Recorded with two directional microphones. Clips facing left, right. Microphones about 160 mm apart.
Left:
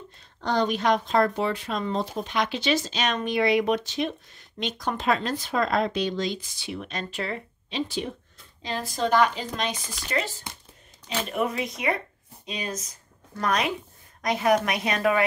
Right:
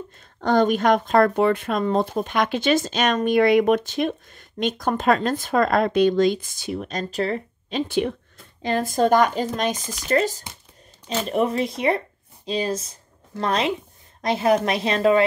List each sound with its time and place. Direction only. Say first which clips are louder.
0.4 s speech: right 6 dB; 50° right (ahead or behind)
8.6 s speech: right 8 dB; 50° right (ahead or behind)
11.2 s a woman's voice: right 6 dB; 30° right (ahead or behind)